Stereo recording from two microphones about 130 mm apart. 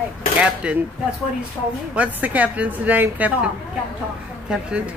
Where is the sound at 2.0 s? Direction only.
10° right (ahead or behind).